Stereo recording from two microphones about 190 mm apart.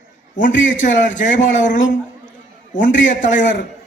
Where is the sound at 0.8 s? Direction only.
40° left (ahead or behind).